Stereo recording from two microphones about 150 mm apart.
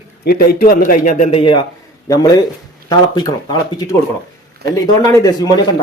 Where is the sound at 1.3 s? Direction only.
35° left (ahead or behind).